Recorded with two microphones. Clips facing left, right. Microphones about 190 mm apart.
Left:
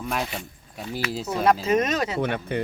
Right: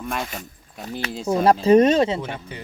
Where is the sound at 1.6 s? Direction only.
30° right (ahead or behind).